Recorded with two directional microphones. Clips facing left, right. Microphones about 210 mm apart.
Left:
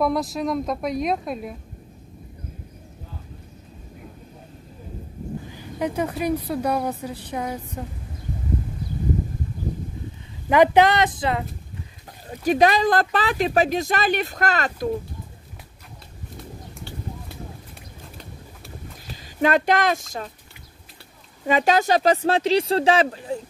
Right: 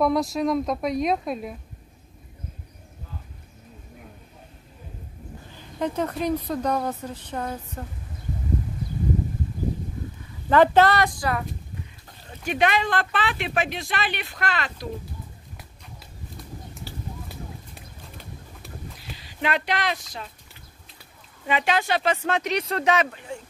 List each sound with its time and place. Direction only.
0.0 s speech: centre (ahead or behind)
5.5 s speech: 10° left (ahead or behind)
10.5 s a woman's voice: 15° left (ahead or behind)
12.3 s speech: 40° left (ahead or behind)
19.1 s speech: 45° left (ahead or behind)
21.5 s speech: 40° left (ahead or behind)